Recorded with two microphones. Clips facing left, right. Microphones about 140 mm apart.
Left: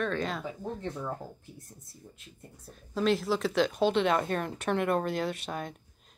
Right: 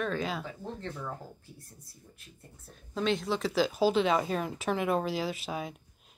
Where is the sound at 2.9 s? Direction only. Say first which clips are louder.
Left 3 dB; centre (ahead or behind).